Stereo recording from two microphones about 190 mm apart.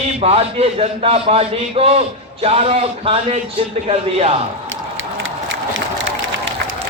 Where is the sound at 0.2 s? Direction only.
30° right (ahead or behind).